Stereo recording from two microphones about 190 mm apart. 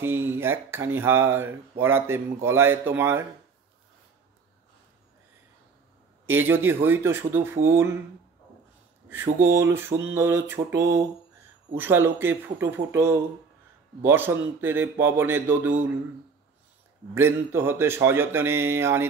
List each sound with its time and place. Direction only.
0.0 s speech: 10° right (ahead or behind)
6.3 s speech: 10° right (ahead or behind)
9.1 s speech: 10° right (ahead or behind)
17.1 s speech: 15° right (ahead or behind)